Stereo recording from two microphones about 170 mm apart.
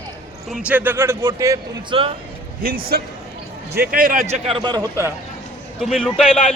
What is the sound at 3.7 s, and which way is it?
Speech, 60° right (ahead or behind).